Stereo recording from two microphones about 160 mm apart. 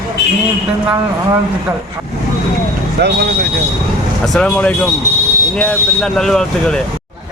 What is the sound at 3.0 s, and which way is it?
Speech, 90° right.